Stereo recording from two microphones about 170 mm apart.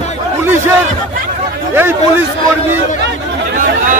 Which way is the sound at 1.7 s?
15° right (ahead or behind).